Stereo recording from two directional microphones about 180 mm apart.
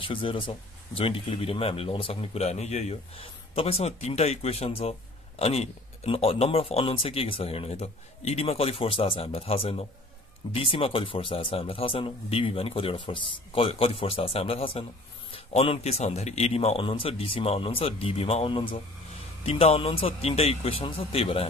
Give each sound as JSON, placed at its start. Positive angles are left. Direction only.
{"t": 0.0, "sound": "speech", "side_deg": 30}